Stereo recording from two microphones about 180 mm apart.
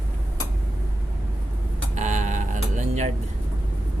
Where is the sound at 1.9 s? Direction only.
45° right (ahead or behind).